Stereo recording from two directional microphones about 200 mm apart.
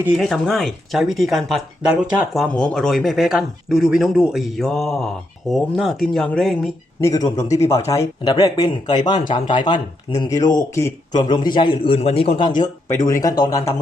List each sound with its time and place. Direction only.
0.0 s speech: centre (ahead or behind)
7.0 s a man's voice: 15° left (ahead or behind)